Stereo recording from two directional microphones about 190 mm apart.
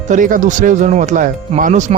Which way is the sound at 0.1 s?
45° right (ahead or behind).